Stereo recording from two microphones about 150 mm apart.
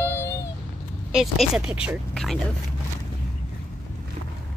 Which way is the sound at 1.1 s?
Centre (ahead or behind).